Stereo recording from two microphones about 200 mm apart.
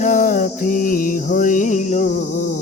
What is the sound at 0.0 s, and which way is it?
Mantra, 40° left (ahead or behind).